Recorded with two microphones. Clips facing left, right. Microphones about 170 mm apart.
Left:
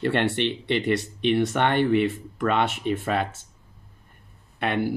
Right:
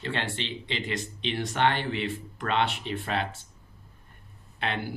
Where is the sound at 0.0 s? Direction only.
60° left (ahead or behind).